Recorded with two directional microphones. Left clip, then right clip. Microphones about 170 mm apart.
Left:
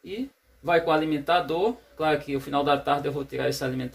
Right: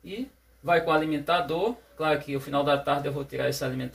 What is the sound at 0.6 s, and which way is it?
Speech, 65° left (ahead or behind).